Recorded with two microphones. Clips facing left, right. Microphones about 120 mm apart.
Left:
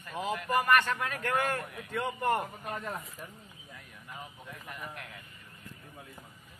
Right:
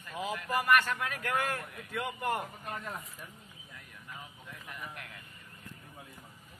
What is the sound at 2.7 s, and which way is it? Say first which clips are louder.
Speech: left 3 dB; 5° left (ahead or behind).